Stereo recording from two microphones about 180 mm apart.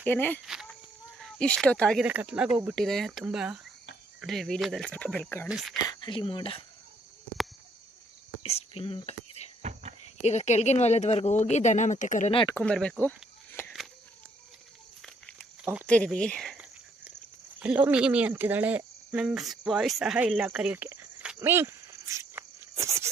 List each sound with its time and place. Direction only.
0.0 s speech: 10° left (ahead or behind)
0.4 s a sound: 5° right (ahead or behind)
1.2 s speech: 5° left (ahead or behind)
2.0 s speech: 10° right (ahead or behind); by 5.5 s 10° left (ahead or behind)
5.5 s speech: centre (ahead or behind)
5.8 s speech: 25° left (ahead or behind)
8.4 s whispering: 35° left (ahead or behind)
10.2 s speech: 40° left (ahead or behind)
12.3 s speech: 30° left (ahead or behind)
12.5 s speech: 5° left (ahead or behind)
13.5 s a sound: 10° left (ahead or behind)
15.0 s a sound: centre (ahead or behind)
17.6 s speech: 10° right (ahead or behind)
21.4 s cricket: 10° right (ahead or behind)